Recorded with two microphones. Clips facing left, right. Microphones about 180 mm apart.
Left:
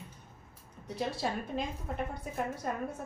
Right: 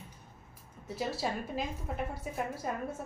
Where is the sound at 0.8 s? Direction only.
5° right (ahead or behind).